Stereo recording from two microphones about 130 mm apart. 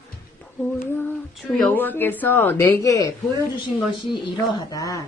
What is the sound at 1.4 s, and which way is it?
Speech, 5° left (ahead or behind).